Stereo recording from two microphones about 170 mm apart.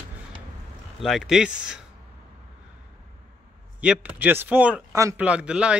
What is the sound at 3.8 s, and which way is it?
Speech, 10° right (ahead or behind).